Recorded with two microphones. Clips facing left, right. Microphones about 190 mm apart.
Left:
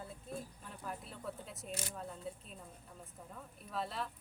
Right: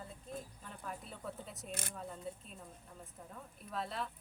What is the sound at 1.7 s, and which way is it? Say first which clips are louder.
Speech: left 2 dB; 55° right (ahead or behind).